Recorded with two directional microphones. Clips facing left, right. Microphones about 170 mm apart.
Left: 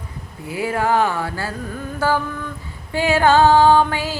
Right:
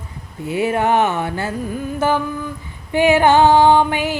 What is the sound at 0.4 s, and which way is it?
Music, 25° right (ahead or behind).